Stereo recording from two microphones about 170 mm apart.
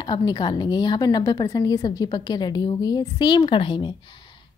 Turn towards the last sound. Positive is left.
turn(degrees=25)  # may be behind; listen again after turning